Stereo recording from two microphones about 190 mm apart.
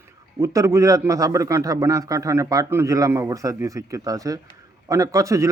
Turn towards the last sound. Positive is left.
turn(degrees=-15)  # may be behind; listen again after turning